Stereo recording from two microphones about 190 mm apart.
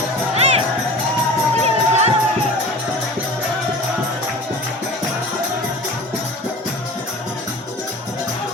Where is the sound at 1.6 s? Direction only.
35° right (ahead or behind).